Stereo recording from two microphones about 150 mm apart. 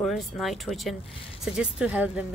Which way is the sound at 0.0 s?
Centre (ahead or behind).